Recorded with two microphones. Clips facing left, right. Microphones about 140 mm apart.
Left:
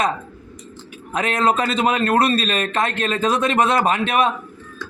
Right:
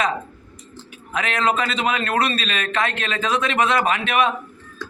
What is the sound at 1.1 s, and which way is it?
A man's voice, 40° left (ahead or behind).